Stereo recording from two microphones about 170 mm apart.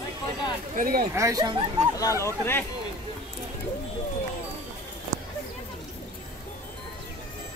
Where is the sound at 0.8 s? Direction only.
55° right (ahead or behind).